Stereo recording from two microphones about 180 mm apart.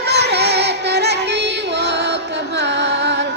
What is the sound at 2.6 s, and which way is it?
Carnatic music, 75° right (ahead or behind).